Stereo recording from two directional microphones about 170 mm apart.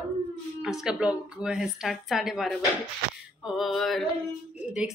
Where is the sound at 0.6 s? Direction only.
5° right (ahead or behind).